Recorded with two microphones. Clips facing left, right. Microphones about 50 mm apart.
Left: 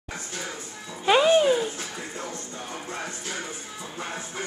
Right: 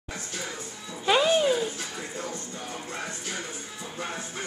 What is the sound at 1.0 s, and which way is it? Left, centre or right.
Music, centre.